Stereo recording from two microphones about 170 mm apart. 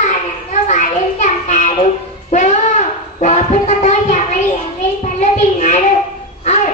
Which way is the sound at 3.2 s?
40° left (ahead or behind).